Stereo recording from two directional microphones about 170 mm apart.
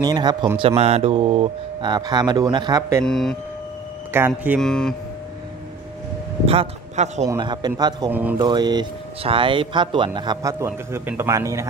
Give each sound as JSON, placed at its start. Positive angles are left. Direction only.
{"t": 0.0, "sound": "speech", "side_deg": -25}
{"t": 0.6, "sound": "speech", "side_deg": -35}
{"t": 3.0, "sound": "speech", "side_deg": 5}
{"t": 4.1, "sound": "speech", "side_deg": -15}
{"t": 4.6, "sound": "speech", "side_deg": 5}
{"t": 6.4, "sound": "speech", "side_deg": -35}
{"t": 7.2, "sound": "speech", "side_deg": -25}
{"t": 8.1, "sound": "speech", "side_deg": -10}
{"t": 8.4, "sound": "speech", "side_deg": -25}